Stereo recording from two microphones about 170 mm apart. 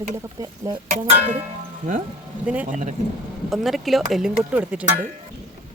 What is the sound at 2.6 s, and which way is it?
Speech, 45° right (ahead or behind).